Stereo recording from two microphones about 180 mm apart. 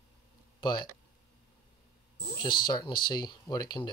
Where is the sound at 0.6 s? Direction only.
25° left (ahead or behind).